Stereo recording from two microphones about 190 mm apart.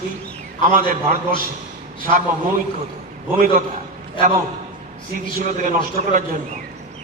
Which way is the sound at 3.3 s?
45° right (ahead or behind).